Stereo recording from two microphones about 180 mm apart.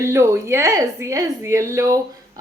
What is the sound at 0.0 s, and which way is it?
A woman's voice, 15° right (ahead or behind).